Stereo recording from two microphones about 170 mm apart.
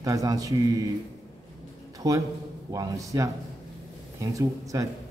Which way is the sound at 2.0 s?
20° right (ahead or behind).